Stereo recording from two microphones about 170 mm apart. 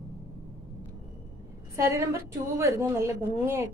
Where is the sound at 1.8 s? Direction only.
15° right (ahead or behind).